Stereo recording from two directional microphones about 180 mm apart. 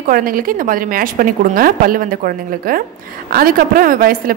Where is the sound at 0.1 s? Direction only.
50° right (ahead or behind).